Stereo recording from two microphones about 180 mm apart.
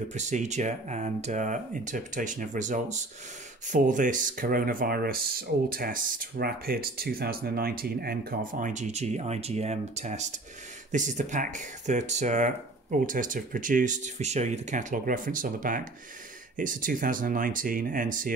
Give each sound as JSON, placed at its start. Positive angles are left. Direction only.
{"t": 0.1, "sound": "speech", "side_deg": -40}